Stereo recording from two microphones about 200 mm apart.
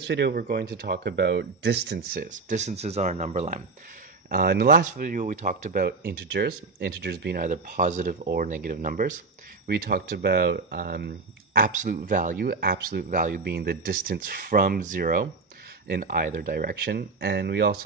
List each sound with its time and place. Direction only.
0.0 s speech: 60° right (ahead or behind); by 3.6 s 35° right (ahead or behind)
4.3 s speech: 50° right (ahead or behind)